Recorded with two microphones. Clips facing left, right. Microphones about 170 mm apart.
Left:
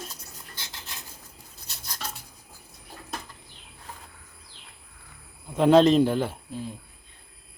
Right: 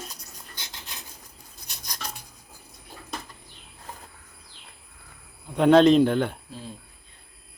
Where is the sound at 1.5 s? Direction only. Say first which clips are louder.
Right 1 dB; 15° right (ahead or behind).